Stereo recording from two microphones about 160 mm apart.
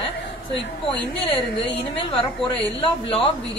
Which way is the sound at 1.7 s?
35° left (ahead or behind).